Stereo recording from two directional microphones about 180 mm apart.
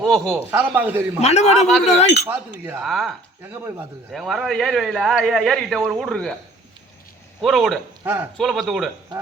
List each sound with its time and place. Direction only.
0.0 s a man's voice: centre (ahead or behind)
1.2 s a man's voice: 35° left (ahead or behind)
1.5 s a man's voice: centre (ahead or behind)
2.0 s a man's voice: 40° left (ahead or behind)
2.2 s a man's voice: 10° right (ahead or behind)
2.8 s a man's voice: centre (ahead or behind)
3.4 s a man's voice: 15° right (ahead or behind)
4.1 s a man's voice: centre (ahead or behind)
7.4 s a man's voice: centre (ahead or behind)
8.0 s a man's voice: 10° right (ahead or behind)
8.4 s a man's voice: centre (ahead or behind)